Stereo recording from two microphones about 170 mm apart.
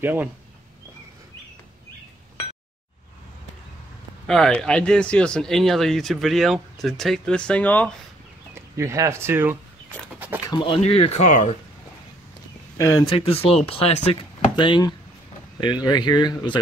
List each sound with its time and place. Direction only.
0.0 s speech: 10° right (ahead or behind)
4.3 s speech: 5° left (ahead or behind)
8.7 s speech: 20° right (ahead or behind)
10.1 s a sound: 10° right (ahead or behind)
10.7 s speech: 35° left (ahead or behind)
12.7 s speech: 15° left (ahead or behind)
13.0 s speech: 30° left (ahead or behind)